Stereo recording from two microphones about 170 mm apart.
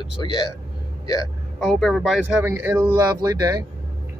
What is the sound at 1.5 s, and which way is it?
Speech, centre (ahead or behind).